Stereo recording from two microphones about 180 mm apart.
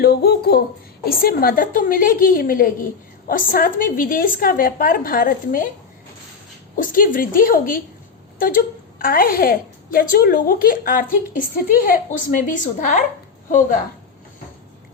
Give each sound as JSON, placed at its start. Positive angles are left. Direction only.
{"t": 0.0, "sound": "a woman's voice", "side_deg": 60}
{"t": 6.7, "sound": "a woman's voice", "side_deg": 50}